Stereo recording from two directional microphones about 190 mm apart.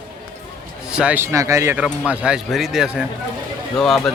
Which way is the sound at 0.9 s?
5° right (ahead or behind).